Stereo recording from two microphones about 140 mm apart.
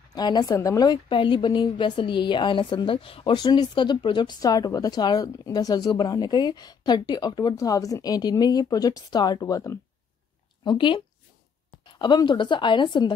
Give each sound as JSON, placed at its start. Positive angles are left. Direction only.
{"t": 0.1, "sound": "a woman's voice", "side_deg": 30}
{"t": 10.6, "sound": "speech", "side_deg": 35}